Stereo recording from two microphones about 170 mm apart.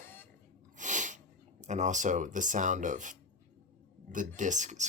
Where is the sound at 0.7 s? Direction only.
45° right (ahead or behind).